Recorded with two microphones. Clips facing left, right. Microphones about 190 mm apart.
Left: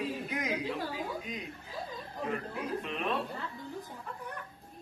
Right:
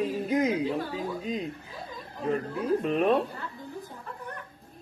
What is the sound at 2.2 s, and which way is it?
Speech, 40° right (ahead or behind).